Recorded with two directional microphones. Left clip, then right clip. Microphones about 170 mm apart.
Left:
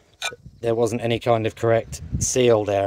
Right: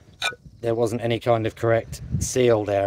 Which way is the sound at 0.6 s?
40° left (ahead or behind).